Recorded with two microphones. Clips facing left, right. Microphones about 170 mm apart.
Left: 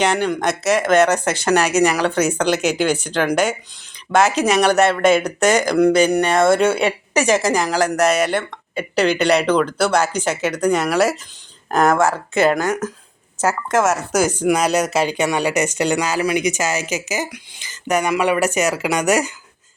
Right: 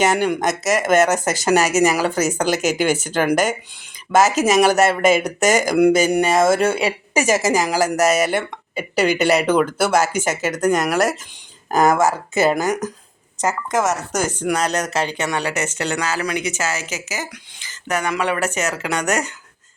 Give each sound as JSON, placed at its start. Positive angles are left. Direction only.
{"t": 0.0, "sound": "speech", "side_deg": -5}
{"t": 2.6, "sound": "speech", "side_deg": -45}
{"t": 2.8, "sound": "speech", "side_deg": -5}